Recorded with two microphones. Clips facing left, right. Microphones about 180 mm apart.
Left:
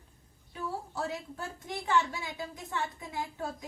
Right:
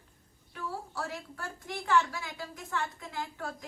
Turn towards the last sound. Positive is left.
turn(degrees=20)  # may be behind; listen again after turning